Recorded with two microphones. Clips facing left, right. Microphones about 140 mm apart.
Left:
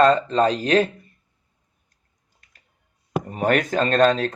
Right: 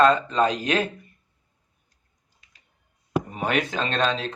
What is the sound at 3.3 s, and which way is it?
Speech, 45° left (ahead or behind).